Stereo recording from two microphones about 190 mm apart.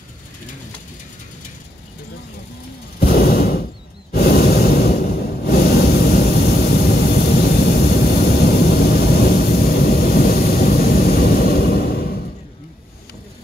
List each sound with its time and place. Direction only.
3.0 s sigh: 55° left (ahead or behind)
4.1 s a sound: 55° left (ahead or behind)
6.9 s vehicle: 55° left (ahead or behind)